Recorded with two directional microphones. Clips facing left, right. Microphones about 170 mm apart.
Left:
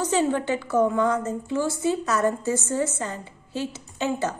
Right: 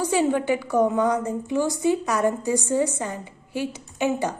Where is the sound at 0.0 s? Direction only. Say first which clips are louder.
Right 1 dB; 10° right (ahead or behind).